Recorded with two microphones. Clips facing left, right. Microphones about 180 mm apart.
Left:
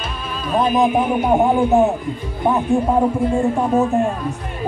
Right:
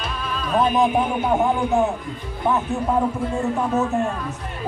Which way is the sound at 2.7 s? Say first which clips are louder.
Left 5 dB; 30° left (ahead or behind).